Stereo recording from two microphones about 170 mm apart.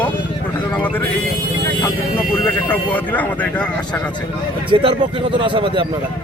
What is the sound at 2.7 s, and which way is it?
Speech, 10° left (ahead or behind).